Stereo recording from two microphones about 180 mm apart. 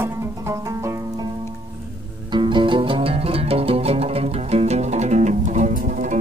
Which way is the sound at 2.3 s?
25° right (ahead or behind).